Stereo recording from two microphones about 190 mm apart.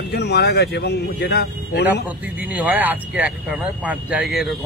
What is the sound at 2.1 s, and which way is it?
Speech, 10° right (ahead or behind).